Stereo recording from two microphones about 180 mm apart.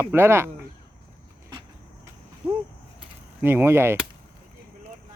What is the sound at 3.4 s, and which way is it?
Speech, 10° right (ahead or behind).